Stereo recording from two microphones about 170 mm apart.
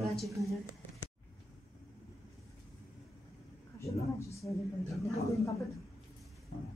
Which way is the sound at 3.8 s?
20° left (ahead or behind).